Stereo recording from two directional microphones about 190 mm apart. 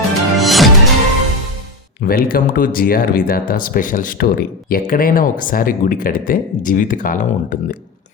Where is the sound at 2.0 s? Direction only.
50° left (ahead or behind).